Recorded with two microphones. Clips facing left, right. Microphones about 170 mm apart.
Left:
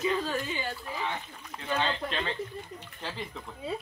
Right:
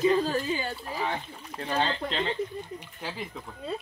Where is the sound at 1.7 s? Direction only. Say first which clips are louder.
Right 2 dB; 30° right (ahead or behind).